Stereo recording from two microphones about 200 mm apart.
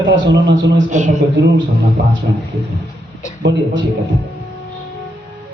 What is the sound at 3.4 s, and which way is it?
Speech, 55° right (ahead or behind).